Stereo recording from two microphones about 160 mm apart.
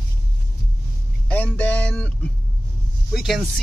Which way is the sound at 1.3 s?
10° left (ahead or behind).